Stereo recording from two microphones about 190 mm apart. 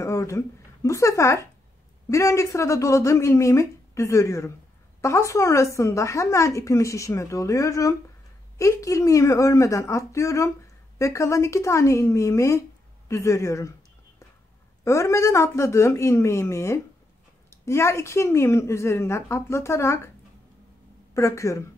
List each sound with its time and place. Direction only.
0.0 s speech: 15° left (ahead or behind)
14.9 s speech: 15° left (ahead or behind)
21.1 s speech: 15° left (ahead or behind)